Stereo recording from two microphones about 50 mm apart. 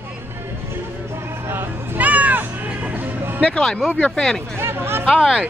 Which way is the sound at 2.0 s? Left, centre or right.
Right.